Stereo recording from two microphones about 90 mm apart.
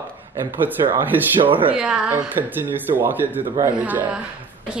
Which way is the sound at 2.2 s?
20° right (ahead or behind).